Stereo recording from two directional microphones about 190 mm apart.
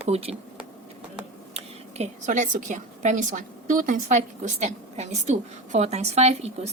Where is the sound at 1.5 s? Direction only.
35° right (ahead or behind).